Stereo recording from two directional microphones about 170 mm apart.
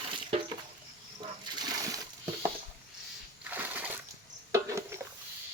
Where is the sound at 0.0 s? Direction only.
35° right (ahead or behind).